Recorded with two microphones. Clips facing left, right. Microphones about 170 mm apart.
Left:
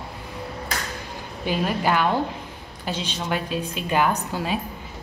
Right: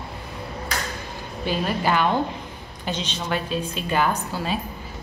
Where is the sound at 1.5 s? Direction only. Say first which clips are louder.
Even; 10° left (ahead or behind).